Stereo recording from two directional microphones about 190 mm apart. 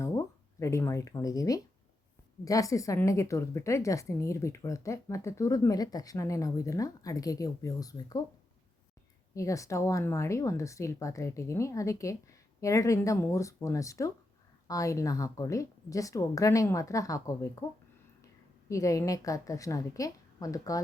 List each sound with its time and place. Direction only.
0.6 s a woman's voice: 15° left (ahead or behind)
9.3 s a woman's voice: 15° left (ahead or behind)
18.7 s a woman's voice: 15° left (ahead or behind)